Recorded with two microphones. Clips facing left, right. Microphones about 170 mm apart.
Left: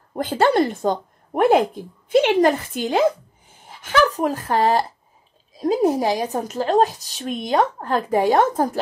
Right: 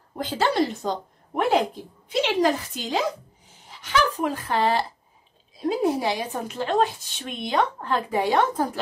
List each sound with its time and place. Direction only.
0.1 s a woman's voice: 50° left (ahead or behind)